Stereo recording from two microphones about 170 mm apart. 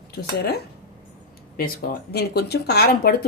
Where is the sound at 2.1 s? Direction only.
75° left (ahead or behind).